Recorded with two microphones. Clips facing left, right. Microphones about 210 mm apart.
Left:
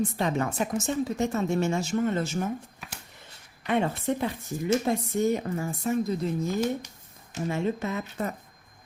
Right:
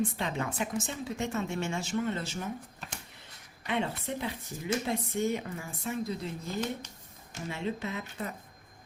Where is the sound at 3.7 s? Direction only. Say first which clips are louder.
Left 6 dB; 50° left (ahead or behind).